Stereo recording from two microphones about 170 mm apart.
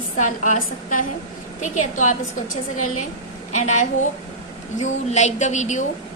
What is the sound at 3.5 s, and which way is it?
A woman's voice, 45° left (ahead or behind).